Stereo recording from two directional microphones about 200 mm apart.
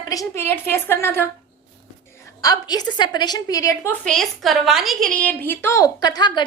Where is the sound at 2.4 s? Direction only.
20° left (ahead or behind).